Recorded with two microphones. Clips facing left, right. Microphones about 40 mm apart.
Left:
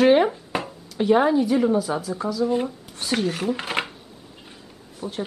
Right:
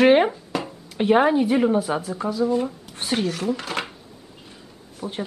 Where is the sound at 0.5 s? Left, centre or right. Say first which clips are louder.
Even; left.